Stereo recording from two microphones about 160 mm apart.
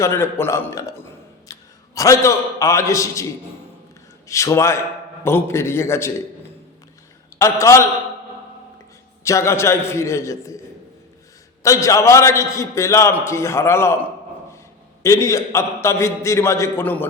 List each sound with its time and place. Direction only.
0.0 s a man's voice: 15° left (ahead or behind)
1.5 s a sound: 20° left (ahead or behind)
2.0 s a man's voice: 20° left (ahead or behind)
4.3 s a man's voice: 20° left (ahead or behind)
7.3 s a man's voice: 20° left (ahead or behind)
9.2 s a man's voice: 15° left (ahead or behind)
11.6 s a man's voice: 20° left (ahead or behind)